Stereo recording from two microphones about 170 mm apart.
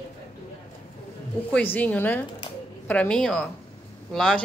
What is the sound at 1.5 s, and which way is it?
Speech, 10° left (ahead or behind).